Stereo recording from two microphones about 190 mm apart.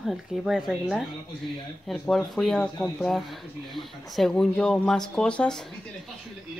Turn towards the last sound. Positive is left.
turn(degrees=5)  # may be behind; listen again after turning